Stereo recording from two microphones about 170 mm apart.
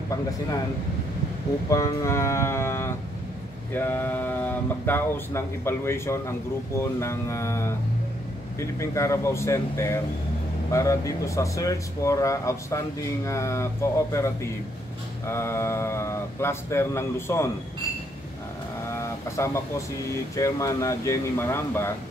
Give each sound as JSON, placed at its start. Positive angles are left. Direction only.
{"t": 1.7, "sound": "speech", "side_deg": 20}
{"t": 18.9, "sound": "vehicle", "side_deg": 15}
{"t": 20.3, "sound": "speech", "side_deg": 20}